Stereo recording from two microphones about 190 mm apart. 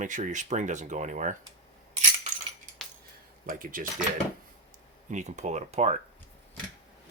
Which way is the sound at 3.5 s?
45° right (ahead or behind).